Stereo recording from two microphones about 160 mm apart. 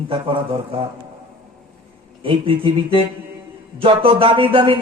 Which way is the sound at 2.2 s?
35° right (ahead or behind).